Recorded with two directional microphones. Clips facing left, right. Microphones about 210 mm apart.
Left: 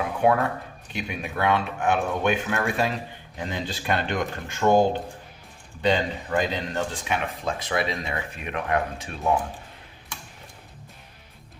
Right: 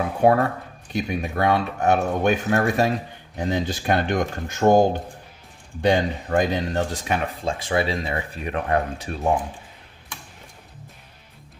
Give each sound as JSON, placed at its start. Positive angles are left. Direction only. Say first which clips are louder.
{"t": 0.2, "sound": "speech", "louder": "right 4 dB", "side_deg": -40}
{"t": 5.8, "sound": "speech", "louder": "right 3 dB", "side_deg": -50}